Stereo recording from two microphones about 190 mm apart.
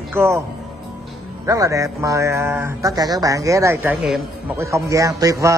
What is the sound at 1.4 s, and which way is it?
Speech, 15° right (ahead or behind).